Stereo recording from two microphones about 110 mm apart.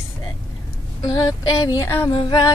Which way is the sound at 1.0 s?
35° left (ahead or behind).